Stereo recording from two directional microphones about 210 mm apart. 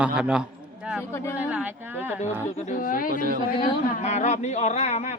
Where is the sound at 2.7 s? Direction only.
40° left (ahead or behind).